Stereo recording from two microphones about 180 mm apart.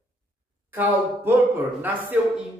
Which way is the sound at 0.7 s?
10° right (ahead or behind).